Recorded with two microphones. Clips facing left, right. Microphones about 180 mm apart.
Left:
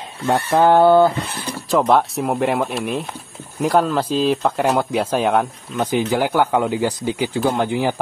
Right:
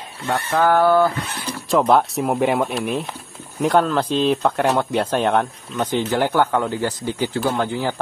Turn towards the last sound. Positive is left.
turn(degrees=15)  # may be behind; listen again after turning